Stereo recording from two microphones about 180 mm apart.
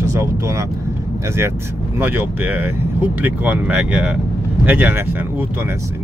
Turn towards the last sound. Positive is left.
turn(degrees=-10)  # may be behind; listen again after turning